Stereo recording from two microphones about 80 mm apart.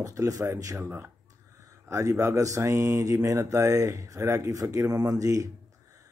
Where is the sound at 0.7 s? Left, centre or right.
Right.